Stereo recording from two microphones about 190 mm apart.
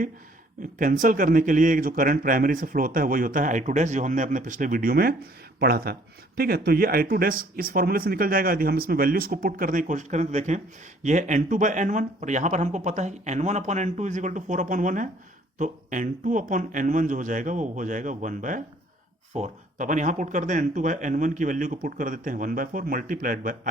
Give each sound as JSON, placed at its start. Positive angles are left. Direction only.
{"t": 0.8, "sound": "speech", "side_deg": -45}